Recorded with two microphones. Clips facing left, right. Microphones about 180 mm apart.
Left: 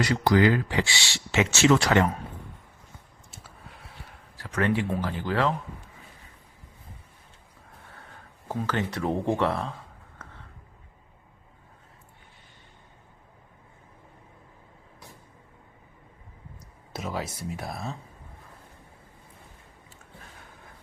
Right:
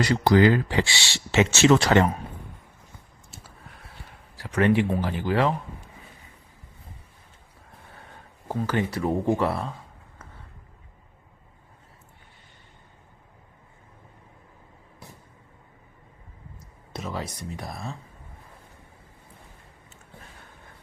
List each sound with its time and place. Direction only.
0.0 s speech: 30° right (ahead or behind)
4.4 s speech: 20° right (ahead or behind)
8.4 s speech: 10° right (ahead or behind)
16.9 s speech: 5° left (ahead or behind)